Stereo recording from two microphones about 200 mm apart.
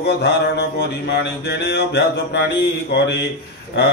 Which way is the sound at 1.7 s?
55° left (ahead or behind).